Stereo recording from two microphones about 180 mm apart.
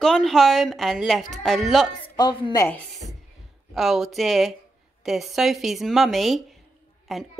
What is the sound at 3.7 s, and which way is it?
Speech, centre (ahead or behind).